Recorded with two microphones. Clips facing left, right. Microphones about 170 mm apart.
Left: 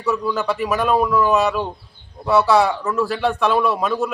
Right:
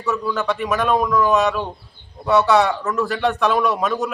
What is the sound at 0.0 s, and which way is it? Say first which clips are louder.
A man's voice: left 1 dB; 10° left (ahead or behind).